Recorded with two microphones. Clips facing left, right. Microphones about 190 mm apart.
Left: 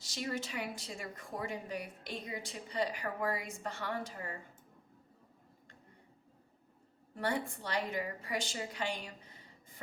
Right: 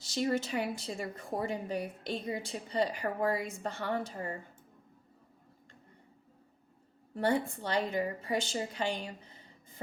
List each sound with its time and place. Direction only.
0.1 s a woman's voice: 30° right (ahead or behind)
7.2 s a woman's voice: 25° right (ahead or behind)